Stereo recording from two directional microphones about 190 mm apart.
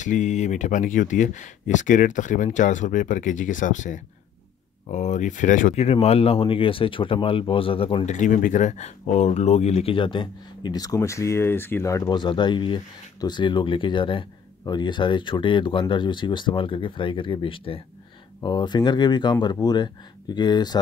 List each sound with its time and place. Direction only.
0.0 s speech: 40° left (ahead or behind); by 20.8 s 20° left (ahead or behind)